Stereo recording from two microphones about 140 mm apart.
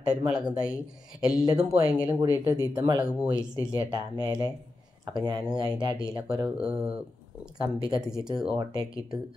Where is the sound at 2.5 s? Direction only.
30° right (ahead or behind).